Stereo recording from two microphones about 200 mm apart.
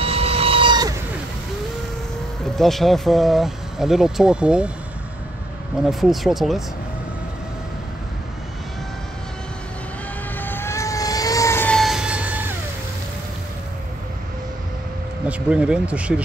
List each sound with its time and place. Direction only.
0.0 s vehicle: 30° right (ahead or behind)
2.5 s speech: centre (ahead or behind)
5.9 s speech: centre (ahead or behind)
10.4 s vehicle: 10° left (ahead or behind); by 12.5 s 10° right (ahead or behind)
15.2 s speech: 5° right (ahead or behind)